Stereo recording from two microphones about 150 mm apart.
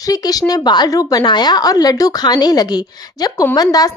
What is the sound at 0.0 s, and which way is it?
A woman's voice, 25° left (ahead or behind).